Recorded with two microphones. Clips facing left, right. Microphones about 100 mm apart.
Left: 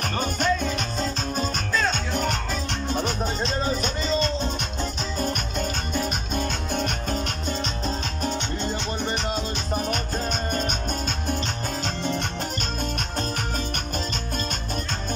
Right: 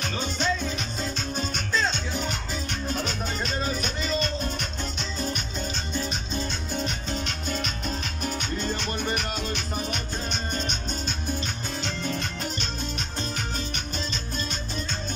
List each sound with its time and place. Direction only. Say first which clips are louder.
0.0 s music: left 3 dB; 50° left (ahead or behind)
1.3 s music: even; 40° left (ahead or behind)
2.1 s music: left 5 dB; 60° left (ahead or behind)
3.3 s music: left 3 dB; 35° left (ahead or behind)
5.2 s music: left 4 dB; 55° left (ahead or behind)
8.3 s music: even; 25° left (ahead or behind)
9.8 s music: left 4 dB; 45° left (ahead or behind)